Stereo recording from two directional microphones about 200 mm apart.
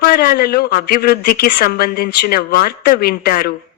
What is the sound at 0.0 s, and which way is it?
A woman's voice, 50° left (ahead or behind).